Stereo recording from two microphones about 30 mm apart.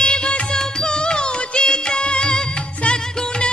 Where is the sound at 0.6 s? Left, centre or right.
Centre.